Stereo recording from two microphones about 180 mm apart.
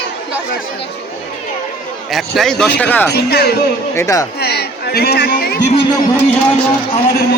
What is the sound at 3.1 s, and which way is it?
Speech, 65° left (ahead or behind).